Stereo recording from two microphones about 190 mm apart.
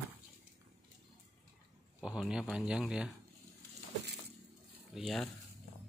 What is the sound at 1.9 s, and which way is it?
A man's voice, 5° right (ahead or behind).